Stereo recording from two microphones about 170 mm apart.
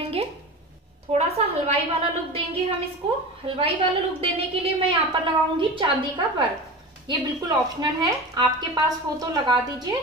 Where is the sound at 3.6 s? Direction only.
35° right (ahead or behind).